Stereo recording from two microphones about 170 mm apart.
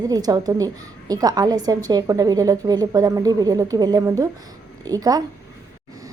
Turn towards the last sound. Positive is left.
turn(degrees=-20)  # may be behind; listen again after turning